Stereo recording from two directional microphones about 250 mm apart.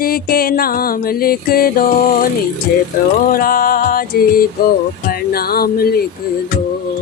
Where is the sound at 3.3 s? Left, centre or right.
Left.